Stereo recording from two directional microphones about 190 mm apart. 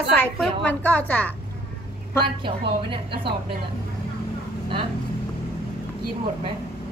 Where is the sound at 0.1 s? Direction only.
5° left (ahead or behind).